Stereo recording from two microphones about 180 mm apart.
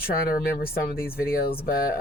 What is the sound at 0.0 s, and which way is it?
Speech, 55° left (ahead or behind).